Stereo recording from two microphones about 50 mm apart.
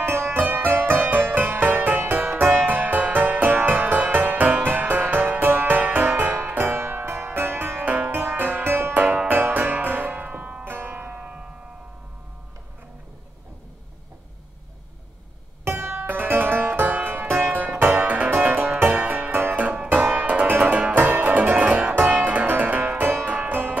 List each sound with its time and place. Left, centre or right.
0.0 s music: right
7.8 s music: right
8.1 s music: right
9.3 s music: right
10.6 s music: right
15.6 s music: right
18.0 s music: right
19.9 s music: right